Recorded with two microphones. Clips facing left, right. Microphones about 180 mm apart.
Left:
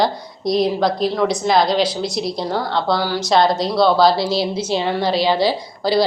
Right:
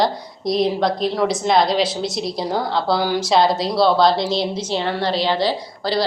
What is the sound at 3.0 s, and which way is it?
Speech, 15° right (ahead or behind).